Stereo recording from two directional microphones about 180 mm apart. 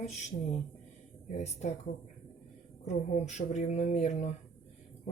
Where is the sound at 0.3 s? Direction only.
30° left (ahead or behind).